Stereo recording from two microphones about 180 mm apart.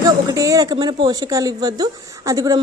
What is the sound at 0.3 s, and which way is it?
Speech, 20° right (ahead or behind).